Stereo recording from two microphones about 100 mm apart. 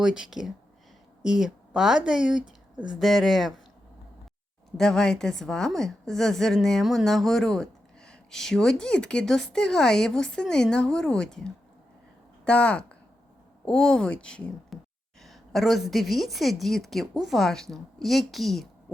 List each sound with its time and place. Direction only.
0.0 s a woman's voice: 5° right (ahead or behind)
3.0 s a woman's voice: centre (ahead or behind)
4.8 s a woman's voice: 5° left (ahead or behind)